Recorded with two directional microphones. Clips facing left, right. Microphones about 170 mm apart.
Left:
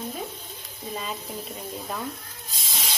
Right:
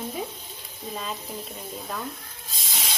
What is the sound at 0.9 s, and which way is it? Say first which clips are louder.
Speech: even; 5° left (ahead or behind).